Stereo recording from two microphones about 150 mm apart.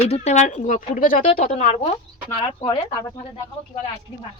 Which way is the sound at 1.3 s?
45° left (ahead or behind).